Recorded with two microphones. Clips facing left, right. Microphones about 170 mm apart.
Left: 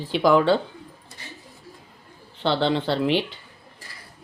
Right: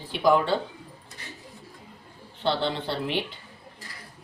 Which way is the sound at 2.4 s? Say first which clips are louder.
Left 5 dB; 90° left.